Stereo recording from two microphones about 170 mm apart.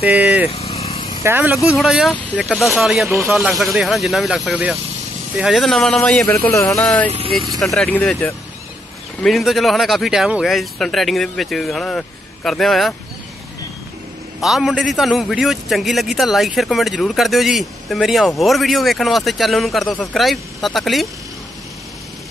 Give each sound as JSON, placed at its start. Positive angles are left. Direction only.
{"t": 0.1, "sound": "speech", "side_deg": -10}
{"t": 0.6, "sound": "vehicle", "side_deg": 35}
{"t": 1.2, "sound": "a man's voice", "side_deg": -10}
{"t": 6.7, "sound": "a man's voice", "side_deg": 5}
{"t": 7.1, "sound": "speech", "side_deg": -35}
{"t": 7.3, "sound": "a man's voice", "side_deg": 0}
{"t": 14.4, "sound": "a man's voice", "side_deg": 0}